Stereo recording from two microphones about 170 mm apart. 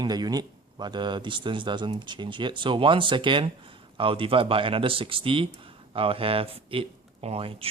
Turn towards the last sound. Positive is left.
turn(degrees=-35)  # may be behind; listen again after turning